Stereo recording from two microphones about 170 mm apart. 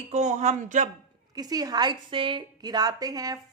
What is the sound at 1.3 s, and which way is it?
A woman's voice, 20° right (ahead or behind).